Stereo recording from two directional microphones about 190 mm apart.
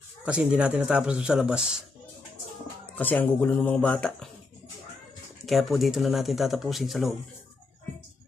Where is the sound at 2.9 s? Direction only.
10° left (ahead or behind).